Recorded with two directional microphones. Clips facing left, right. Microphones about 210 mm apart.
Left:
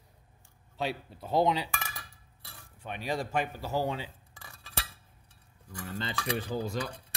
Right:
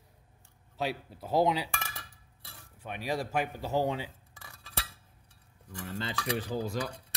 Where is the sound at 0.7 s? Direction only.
5° right (ahead or behind).